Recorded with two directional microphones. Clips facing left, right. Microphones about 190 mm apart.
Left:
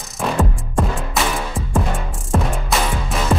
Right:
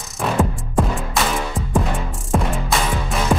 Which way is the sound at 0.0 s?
Centre (ahead or behind).